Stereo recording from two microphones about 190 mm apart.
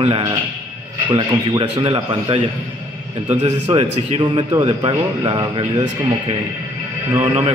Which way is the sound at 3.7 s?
30° right (ahead or behind).